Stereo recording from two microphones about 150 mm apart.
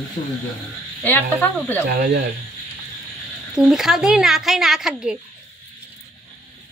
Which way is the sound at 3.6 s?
Centre (ahead or behind).